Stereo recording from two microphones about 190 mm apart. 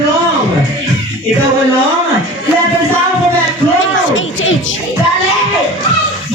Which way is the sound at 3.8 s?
90° left.